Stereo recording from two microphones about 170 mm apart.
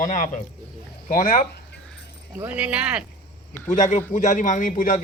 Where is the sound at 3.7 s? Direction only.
45° left (ahead or behind).